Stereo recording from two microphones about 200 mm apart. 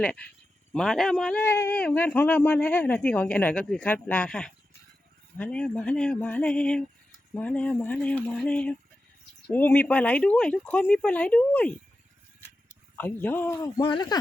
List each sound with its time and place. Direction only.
0.0 s a man's voice: 5° left (ahead or behind)
5.4 s a sound: 5° left (ahead or behind)
9.5 s a man's voice: 10° left (ahead or behind)
13.0 s a man's voice: 10° left (ahead or behind)
13.6 s speech: 20° left (ahead or behind)